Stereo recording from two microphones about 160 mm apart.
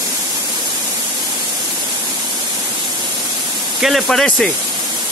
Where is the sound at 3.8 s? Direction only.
Centre (ahead or behind).